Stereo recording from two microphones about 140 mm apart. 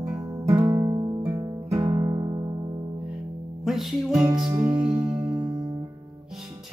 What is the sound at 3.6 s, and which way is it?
Music, centre (ahead or behind).